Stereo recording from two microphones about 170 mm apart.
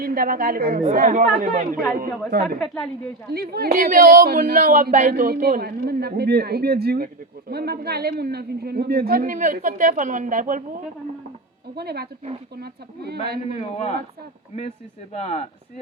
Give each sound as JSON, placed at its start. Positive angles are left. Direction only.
{"t": 0.0, "sound": "speech", "side_deg": -55}
{"t": 2.6, "sound": "a woman's voice", "side_deg": 5}
{"t": 3.3, "sound": "speech", "side_deg": -65}
{"t": 11.8, "sound": "speech", "side_deg": -70}
{"t": 13.5, "sound": "speech", "side_deg": 40}
{"t": 15.1, "sound": "speech", "side_deg": 40}